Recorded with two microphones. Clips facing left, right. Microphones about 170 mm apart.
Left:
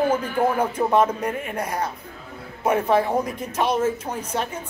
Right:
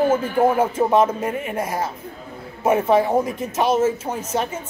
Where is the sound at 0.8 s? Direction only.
5° right (ahead or behind).